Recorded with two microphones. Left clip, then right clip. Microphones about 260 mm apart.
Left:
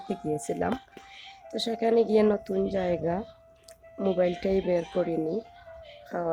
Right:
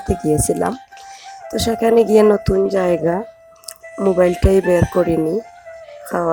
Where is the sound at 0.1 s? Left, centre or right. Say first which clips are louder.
Right 13 dB; right.